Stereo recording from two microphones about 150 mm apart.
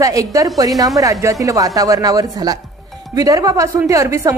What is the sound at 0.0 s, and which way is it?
A woman's voice, 20° right (ahead or behind).